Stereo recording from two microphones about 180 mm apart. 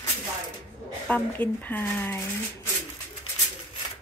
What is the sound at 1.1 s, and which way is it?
Speech, 10° left (ahead or behind).